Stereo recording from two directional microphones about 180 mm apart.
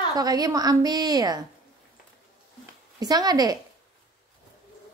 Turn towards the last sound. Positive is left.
turn(degrees=-20)  # may be behind; listen again after turning